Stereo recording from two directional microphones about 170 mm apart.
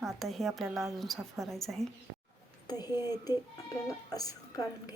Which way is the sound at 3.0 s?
25° left (ahead or behind).